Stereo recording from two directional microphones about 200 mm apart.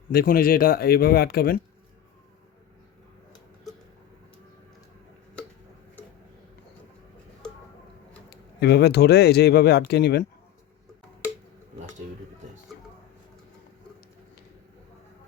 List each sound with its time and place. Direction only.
0.1 s speech: 50° left (ahead or behind)
8.3 s speech: 55° left (ahead or behind)